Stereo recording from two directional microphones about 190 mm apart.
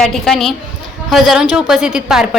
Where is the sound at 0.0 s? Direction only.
Centre (ahead or behind).